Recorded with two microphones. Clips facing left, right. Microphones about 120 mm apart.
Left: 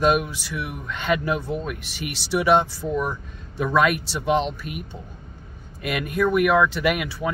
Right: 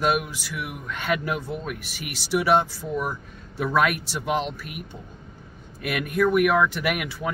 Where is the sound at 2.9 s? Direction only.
10° right (ahead or behind).